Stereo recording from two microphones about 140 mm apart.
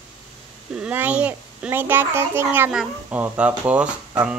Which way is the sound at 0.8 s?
10° right (ahead or behind).